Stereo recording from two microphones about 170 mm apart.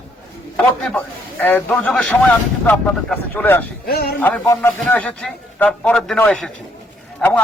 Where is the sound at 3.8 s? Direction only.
70° left (ahead or behind).